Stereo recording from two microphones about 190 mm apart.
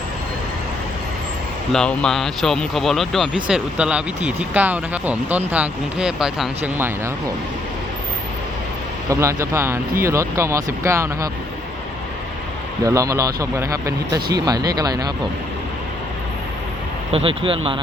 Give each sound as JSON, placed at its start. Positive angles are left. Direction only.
{"t": 1.7, "sound": "speech", "side_deg": 5}
{"t": 9.0, "sound": "speech", "side_deg": -15}
{"t": 12.8, "sound": "speech", "side_deg": -15}
{"t": 17.1, "sound": "speech", "side_deg": -30}